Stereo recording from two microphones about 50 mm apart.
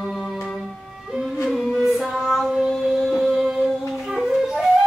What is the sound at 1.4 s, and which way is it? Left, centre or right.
Music, centre.